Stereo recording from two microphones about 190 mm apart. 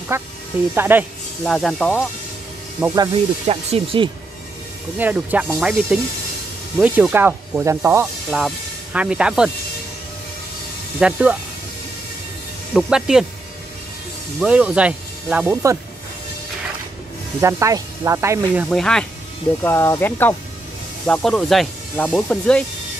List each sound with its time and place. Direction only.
0.1 s speech: 15° right (ahead or behind)
1.4 s speech: centre (ahead or behind)
2.8 s speech: 15° right (ahead or behind)
3.4 s speech: 30° right (ahead or behind)
4.9 s speech: 10° right (ahead or behind)
11.0 s speech: 5° right (ahead or behind)
12.7 s speech: 5° right (ahead or behind)
14.4 s speech: 5° right (ahead or behind)
17.4 s speech: 15° right (ahead or behind)
18.7 s speech: 5° left (ahead or behind)